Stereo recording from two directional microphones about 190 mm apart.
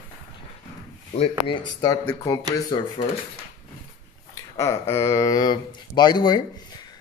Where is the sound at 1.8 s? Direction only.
20° left (ahead or behind).